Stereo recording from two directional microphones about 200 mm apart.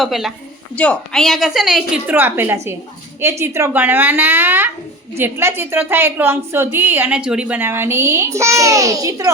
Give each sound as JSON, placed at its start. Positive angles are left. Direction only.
{"t": 0.0, "sound": "a woman's voice", "side_deg": 0}